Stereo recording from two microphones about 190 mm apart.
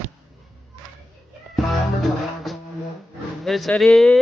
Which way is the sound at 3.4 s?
Centre (ahead or behind).